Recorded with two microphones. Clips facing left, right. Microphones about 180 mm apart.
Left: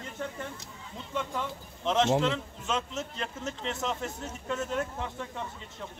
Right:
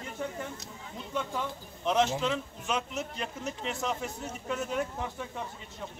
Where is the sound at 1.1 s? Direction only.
5° right (ahead or behind).